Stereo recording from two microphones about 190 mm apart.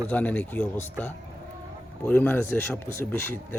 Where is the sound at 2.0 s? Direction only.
10° left (ahead or behind).